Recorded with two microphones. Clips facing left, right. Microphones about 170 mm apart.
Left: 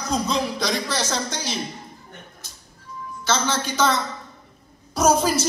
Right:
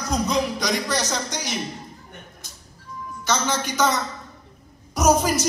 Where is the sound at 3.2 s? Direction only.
15° right (ahead or behind).